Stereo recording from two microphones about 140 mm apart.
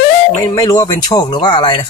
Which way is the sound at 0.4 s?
25° left (ahead or behind).